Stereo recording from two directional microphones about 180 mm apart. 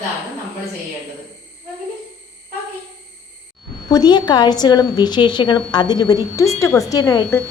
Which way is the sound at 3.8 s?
20° left (ahead or behind).